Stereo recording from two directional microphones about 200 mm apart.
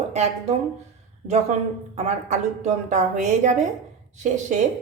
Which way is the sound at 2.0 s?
35° right (ahead or behind).